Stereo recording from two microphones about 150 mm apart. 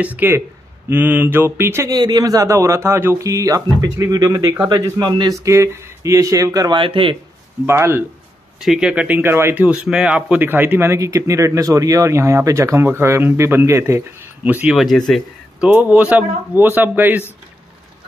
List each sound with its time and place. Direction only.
0.0 s a man's voice: 10° right (ahead or behind)
6.8 s speech: 35° right (ahead or behind)
7.6 s speech: 15° right (ahead or behind)
8.5 s speech: 5° right (ahead or behind)
15.6 s speech: 10° right (ahead or behind)